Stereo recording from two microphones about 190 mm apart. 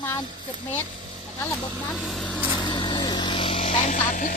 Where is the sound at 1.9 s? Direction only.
Centre (ahead or behind).